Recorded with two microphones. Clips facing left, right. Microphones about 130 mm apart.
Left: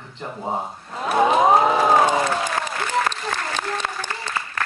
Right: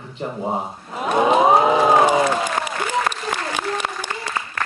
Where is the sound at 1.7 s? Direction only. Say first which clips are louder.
Right 2 dB; 10° right (ahead or behind).